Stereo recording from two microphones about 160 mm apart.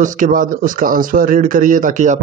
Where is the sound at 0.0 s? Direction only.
55° right (ahead or behind).